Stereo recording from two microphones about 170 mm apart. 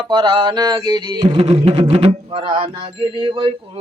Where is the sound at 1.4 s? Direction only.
35° right (ahead or behind).